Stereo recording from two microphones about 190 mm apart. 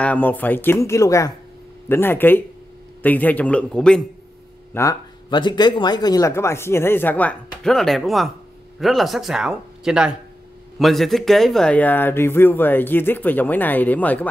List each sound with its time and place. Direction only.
0.0 s speech: 10° left (ahead or behind)
4.7 s speech: 20° left (ahead or behind)